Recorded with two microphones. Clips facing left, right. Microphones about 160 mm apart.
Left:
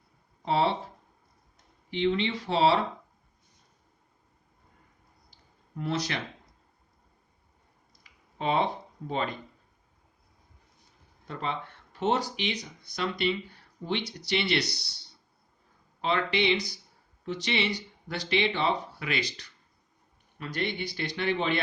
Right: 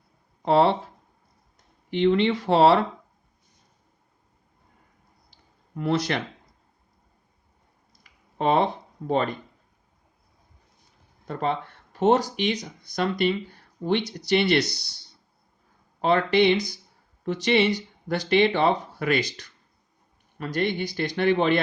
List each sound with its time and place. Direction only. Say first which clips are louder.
0.4 s speech: right 7 dB; 60° right (ahead or behind)
1.9 s speech: right 7 dB; 55° right (ahead or behind)
5.8 s speech: right 7 dB; 60° right (ahead or behind)
11.3 s speech: right 7 dB; 45° right (ahead or behind)
16.0 s speech: right 7 dB; 45° right (ahead or behind)